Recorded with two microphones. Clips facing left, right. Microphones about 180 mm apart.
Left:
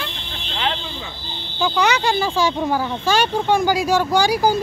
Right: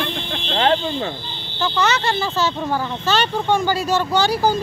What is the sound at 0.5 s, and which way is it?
Speech, 45° right (ahead or behind).